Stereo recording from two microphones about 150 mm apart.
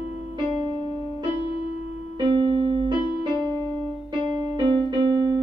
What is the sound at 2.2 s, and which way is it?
Music, 30° right (ahead or behind).